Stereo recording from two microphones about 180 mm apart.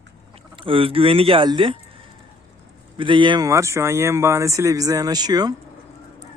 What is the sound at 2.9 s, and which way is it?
Speech, 25° right (ahead or behind).